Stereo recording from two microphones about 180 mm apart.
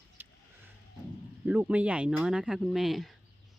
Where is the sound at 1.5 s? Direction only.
10° right (ahead or behind).